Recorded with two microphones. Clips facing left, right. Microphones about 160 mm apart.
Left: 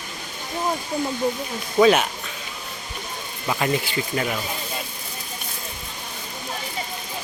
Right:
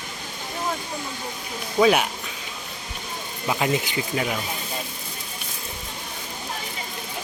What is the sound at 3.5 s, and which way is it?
Speech, 10° right (ahead or behind).